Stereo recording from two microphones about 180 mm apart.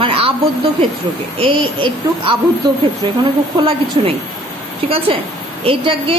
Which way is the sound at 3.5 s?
30° right (ahead or behind).